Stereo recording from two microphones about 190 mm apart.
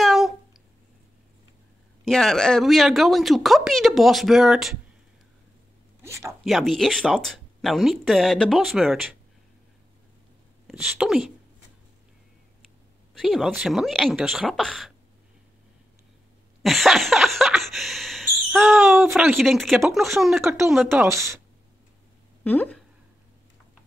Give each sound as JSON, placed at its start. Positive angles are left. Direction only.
{"t": 0.0, "sound": "a sound", "side_deg": 0}
{"t": 2.0, "sound": "speech", "side_deg": 0}
{"t": 6.0, "sound": "speech", "side_deg": -15}
{"t": 6.4, "sound": "speech", "side_deg": 0}
{"t": 10.7, "sound": "speech", "side_deg": -5}
{"t": 13.1, "sound": "speech", "side_deg": 0}
{"t": 16.6, "sound": "a sound", "side_deg": 0}
{"t": 19.1, "sound": "speech", "side_deg": 0}
{"t": 20.9, "sound": "speech", "side_deg": -15}
{"t": 22.4, "sound": "speech", "side_deg": 10}